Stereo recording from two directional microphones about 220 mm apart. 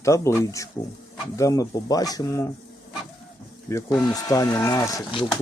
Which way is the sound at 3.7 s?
15° left (ahead or behind).